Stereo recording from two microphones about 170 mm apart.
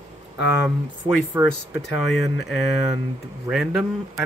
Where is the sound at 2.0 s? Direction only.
Centre (ahead or behind).